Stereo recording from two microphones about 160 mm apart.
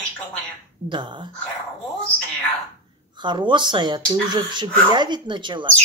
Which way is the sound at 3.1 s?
30° right (ahead or behind).